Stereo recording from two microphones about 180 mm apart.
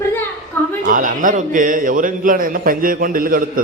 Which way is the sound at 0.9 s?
45° right (ahead or behind).